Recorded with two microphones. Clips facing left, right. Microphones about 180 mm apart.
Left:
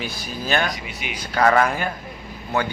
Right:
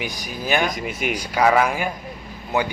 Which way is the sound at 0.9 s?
45° right (ahead or behind).